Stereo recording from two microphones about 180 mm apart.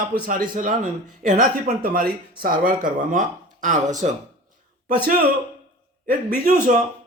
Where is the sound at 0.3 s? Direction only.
50° right (ahead or behind).